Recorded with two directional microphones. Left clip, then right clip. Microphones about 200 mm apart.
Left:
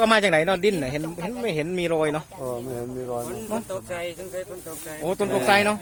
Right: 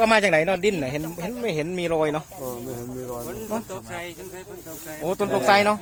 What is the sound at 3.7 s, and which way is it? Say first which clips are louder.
Speech: left 4 dB; 55° left (ahead or behind).